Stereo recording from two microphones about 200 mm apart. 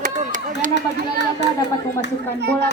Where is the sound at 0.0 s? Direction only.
40° right (ahead or behind).